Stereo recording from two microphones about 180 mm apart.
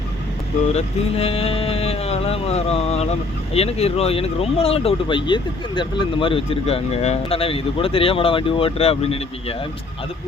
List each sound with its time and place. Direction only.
0.7 s speech: 35° left (ahead or behind)